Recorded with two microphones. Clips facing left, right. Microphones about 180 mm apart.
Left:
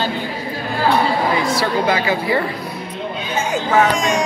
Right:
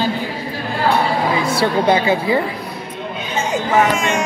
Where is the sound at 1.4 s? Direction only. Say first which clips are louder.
Right 2 dB; 25° right (ahead or behind).